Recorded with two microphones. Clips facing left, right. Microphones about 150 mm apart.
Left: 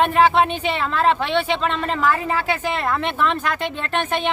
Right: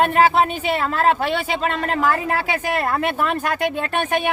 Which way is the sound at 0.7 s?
45° right (ahead or behind).